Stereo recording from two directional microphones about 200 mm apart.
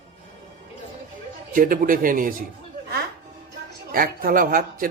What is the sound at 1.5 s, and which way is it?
Speech, 40° right (ahead or behind).